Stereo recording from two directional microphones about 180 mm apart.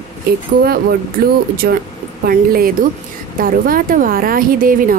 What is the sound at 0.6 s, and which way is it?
A woman's voice, 55° right (ahead or behind).